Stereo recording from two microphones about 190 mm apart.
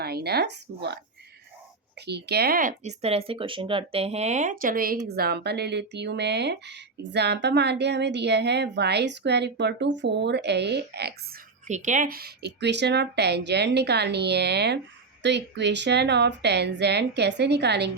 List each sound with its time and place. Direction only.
0.0 s speech: 55° right (ahead or behind)
2.0 s speech: 60° right (ahead or behind)
11.7 s speech: 40° right (ahead or behind); by 17.9 s 60° right (ahead or behind)